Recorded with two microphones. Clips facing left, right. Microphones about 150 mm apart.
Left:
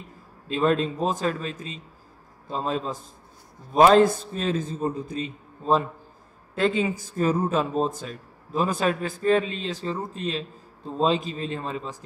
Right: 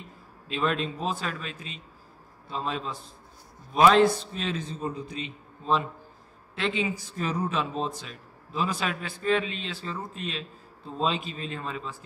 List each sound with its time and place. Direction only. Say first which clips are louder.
0.5 s a man's voice: left 6 dB; 35° left (ahead or behind)